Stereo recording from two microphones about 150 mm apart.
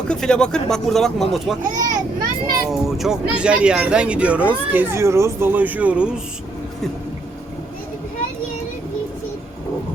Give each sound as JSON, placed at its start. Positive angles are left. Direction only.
{"t": 0.1, "sound": "speech", "side_deg": 5}
{"t": 1.7, "sound": "a child's voice", "side_deg": -60}
{"t": 2.6, "sound": "speech", "side_deg": 0}